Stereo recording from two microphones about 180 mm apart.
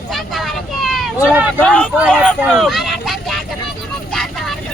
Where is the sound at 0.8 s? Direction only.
Centre (ahead or behind).